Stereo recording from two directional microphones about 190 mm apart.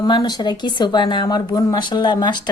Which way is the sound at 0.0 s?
20° left (ahead or behind).